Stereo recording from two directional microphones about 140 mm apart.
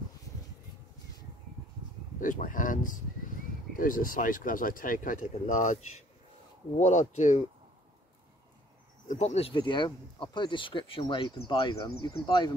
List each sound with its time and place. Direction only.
2.1 s speech: 70° left (ahead or behind)
6.8 s speech: 60° left (ahead or behind)
9.0 s speech: 60° left (ahead or behind)
9.5 s speech: 35° left (ahead or behind)